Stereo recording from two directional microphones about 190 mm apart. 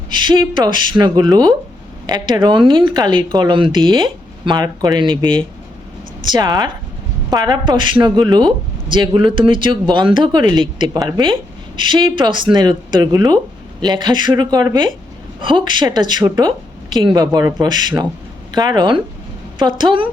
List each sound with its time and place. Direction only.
0.1 s speech: 25° right (ahead or behind)